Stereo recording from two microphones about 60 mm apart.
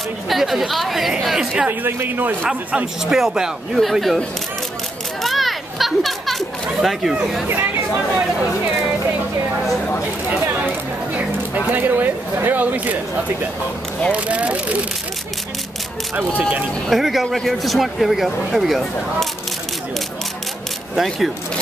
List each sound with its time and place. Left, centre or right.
0.3 s a man's voice: centre
1.7 s speech: right
3.1 s a man's voice: centre
5.2 s children playing: centre
7.4 s speech: right
11.7 s speech: right
16.2 s speech: right
16.9 s speech: centre
20.9 s speech: centre